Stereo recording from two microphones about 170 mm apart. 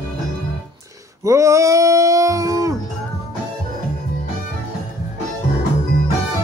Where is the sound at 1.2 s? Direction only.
20° right (ahead or behind).